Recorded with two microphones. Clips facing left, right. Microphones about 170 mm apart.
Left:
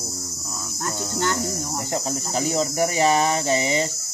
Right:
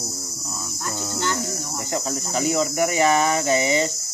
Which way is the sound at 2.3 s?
35° left (ahead or behind).